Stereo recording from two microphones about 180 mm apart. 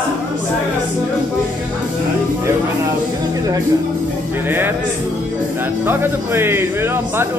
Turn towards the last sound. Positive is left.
turn(degrees=-10)  # may be behind; listen again after turning